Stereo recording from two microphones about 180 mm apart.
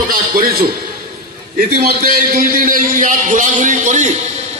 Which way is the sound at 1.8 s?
50° right (ahead or behind).